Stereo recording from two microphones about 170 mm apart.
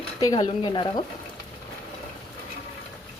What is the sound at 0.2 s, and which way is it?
Speech, 25° left (ahead or behind).